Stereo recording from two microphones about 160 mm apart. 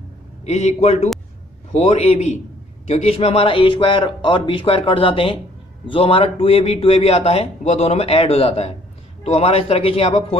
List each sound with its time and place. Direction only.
0.5 s a man's voice: 45° left (ahead or behind)